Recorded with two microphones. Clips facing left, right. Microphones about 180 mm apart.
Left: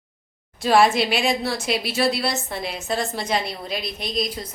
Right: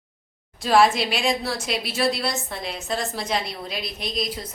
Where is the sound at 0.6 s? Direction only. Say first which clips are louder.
Left 1 dB; centre (ahead or behind).